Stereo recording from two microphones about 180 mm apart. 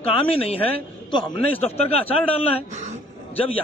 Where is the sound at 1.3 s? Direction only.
35° left (ahead or behind).